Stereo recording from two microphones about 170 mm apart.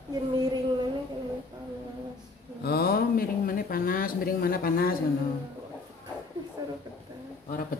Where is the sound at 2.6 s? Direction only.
65° left (ahead or behind).